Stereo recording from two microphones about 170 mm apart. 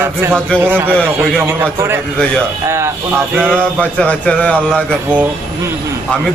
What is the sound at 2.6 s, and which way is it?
Speech, 15° right (ahead or behind).